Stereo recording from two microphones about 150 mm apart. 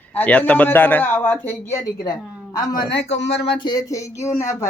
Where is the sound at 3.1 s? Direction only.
35° left (ahead or behind).